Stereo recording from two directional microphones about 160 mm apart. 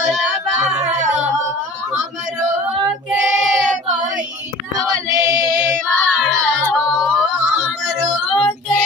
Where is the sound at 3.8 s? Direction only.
50° right (ahead or behind).